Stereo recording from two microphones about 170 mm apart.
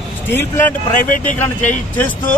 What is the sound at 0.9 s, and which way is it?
Speech, 50° left (ahead or behind).